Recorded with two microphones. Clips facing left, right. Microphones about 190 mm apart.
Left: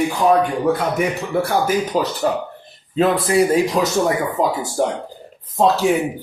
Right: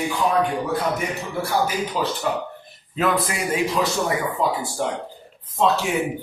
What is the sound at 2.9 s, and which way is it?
A man's voice, 30° left (ahead or behind).